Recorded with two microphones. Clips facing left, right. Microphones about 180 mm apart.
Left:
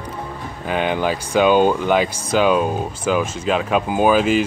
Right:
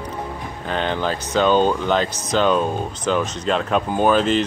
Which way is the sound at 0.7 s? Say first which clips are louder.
Left 3 dB; 10° left (ahead or behind).